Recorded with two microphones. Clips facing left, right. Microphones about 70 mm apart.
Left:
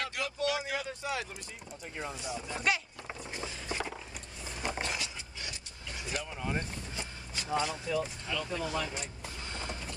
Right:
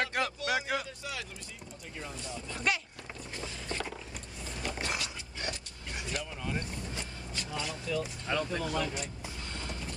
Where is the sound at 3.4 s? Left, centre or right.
Centre.